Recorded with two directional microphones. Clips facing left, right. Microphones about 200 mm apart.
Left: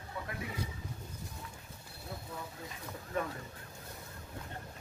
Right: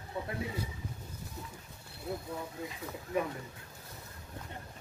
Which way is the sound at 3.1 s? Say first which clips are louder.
Right 3 dB; 10° right (ahead or behind).